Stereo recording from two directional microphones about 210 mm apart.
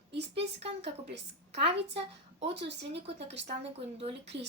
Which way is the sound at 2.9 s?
30° right (ahead or behind).